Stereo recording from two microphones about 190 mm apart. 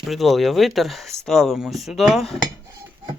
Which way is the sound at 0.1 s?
Centre (ahead or behind).